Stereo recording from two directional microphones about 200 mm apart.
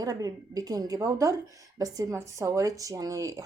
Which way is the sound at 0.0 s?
20° right (ahead or behind).